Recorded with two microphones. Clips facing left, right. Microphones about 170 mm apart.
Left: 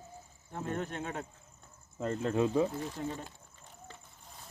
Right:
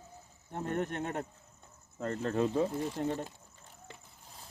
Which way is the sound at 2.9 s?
65° right (ahead or behind).